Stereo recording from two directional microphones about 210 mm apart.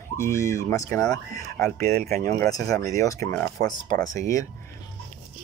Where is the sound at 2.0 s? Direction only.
40° right (ahead or behind).